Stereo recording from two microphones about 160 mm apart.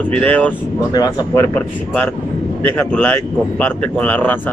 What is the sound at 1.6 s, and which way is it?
Speech, 5° left (ahead or behind).